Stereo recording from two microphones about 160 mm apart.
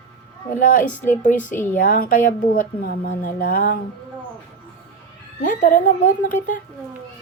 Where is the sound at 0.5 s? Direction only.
55° left (ahead or behind).